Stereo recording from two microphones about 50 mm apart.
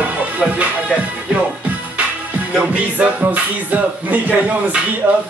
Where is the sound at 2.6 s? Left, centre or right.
Right.